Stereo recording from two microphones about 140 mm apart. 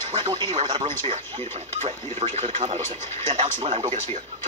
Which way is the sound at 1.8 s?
55° right (ahead or behind).